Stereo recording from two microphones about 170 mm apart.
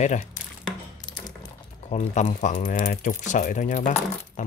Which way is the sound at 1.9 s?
45° left (ahead or behind).